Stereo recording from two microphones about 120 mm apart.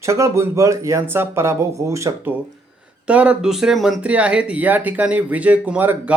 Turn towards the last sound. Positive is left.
turn(degrees=-15)  # may be behind; listen again after turning